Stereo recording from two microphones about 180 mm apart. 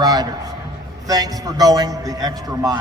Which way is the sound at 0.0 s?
20° right (ahead or behind).